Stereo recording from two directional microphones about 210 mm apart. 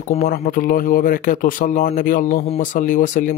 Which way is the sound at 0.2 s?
40° left (ahead or behind).